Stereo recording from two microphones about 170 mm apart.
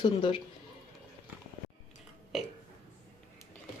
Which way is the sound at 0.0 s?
30° left (ahead or behind).